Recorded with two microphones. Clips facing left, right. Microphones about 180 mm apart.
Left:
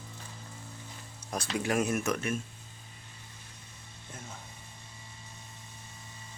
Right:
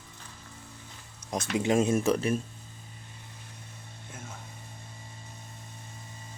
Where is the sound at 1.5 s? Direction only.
25° right (ahead or behind).